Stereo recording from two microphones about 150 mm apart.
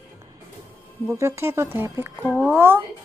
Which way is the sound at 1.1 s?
20° right (ahead or behind).